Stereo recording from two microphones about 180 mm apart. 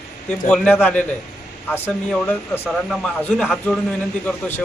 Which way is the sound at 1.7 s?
10° left (ahead or behind).